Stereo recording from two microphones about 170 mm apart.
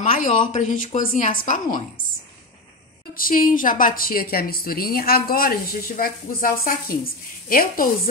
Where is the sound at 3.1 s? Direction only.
55° left (ahead or behind).